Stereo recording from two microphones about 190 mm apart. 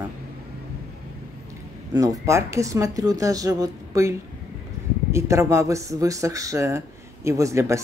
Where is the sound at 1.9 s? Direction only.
20° right (ahead or behind).